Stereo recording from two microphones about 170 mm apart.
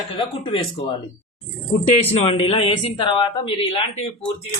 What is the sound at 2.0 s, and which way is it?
A woman's voice, 35° left (ahead or behind).